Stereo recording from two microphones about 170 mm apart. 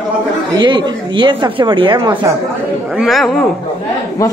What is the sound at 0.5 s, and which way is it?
A woman's voice, 25° right (ahead or behind).